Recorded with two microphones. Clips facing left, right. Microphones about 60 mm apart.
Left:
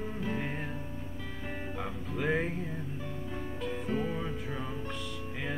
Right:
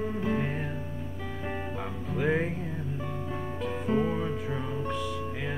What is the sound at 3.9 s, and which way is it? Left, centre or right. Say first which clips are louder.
Music: right 7 dB; right.